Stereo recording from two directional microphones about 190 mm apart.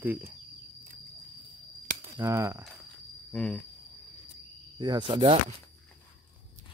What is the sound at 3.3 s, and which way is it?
Cricket, 5° left (ahead or behind).